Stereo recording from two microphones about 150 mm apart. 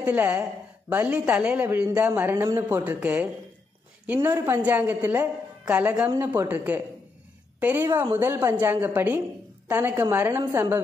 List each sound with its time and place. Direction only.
0.0 s a woman's voice: 10° right (ahead or behind)